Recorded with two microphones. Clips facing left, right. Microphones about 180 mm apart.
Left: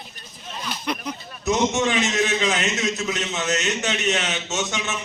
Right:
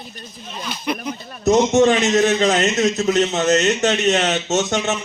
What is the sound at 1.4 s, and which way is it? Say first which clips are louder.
A man's voice: right 8 dB; 40° right (ahead or behind).